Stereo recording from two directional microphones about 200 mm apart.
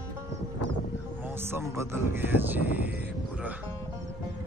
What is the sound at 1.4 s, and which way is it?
Speech, 10° right (ahead or behind).